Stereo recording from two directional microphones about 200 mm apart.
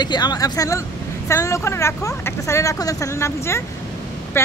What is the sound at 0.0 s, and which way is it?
A woman's voice, 20° left (ahead or behind).